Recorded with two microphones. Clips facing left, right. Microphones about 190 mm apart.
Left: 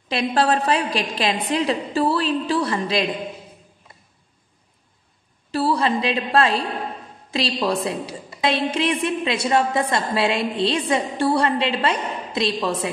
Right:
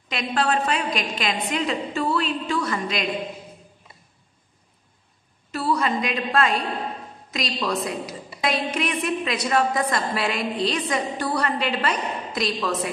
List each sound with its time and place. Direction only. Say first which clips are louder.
0.1 s a woman's voice: left 4 dB; 35° left (ahead or behind)
5.5 s a woman's voice: left 3 dB; 30° left (ahead or behind)